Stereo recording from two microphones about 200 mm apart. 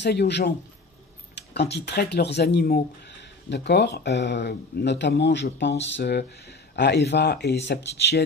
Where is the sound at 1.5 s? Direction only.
60° left (ahead or behind).